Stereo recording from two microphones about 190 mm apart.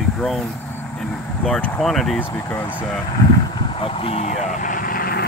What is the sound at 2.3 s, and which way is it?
Speech, 10° left (ahead or behind).